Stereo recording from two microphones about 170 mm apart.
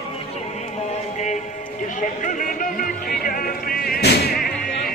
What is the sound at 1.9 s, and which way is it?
Chatter, 50° left (ahead or behind).